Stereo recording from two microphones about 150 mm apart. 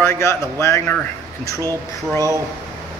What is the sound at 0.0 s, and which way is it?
Speech, 15° left (ahead or behind).